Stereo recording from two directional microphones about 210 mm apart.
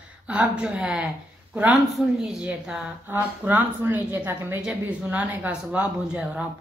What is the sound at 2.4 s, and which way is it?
A woman's voice, 5° right (ahead or behind).